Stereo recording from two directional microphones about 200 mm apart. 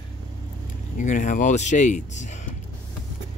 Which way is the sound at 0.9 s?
40° left (ahead or behind).